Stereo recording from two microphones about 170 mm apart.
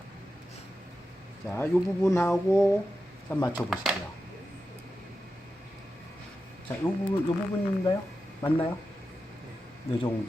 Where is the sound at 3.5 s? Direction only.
5° right (ahead or behind).